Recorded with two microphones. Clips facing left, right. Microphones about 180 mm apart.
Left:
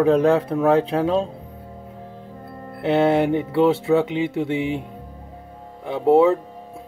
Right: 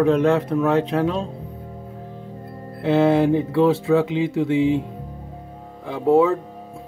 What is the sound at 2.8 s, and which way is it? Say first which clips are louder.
Speech: right 1 dB; 25° left (ahead or behind).